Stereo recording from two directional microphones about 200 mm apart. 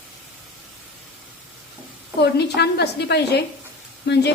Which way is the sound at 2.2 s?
55° left (ahead or behind).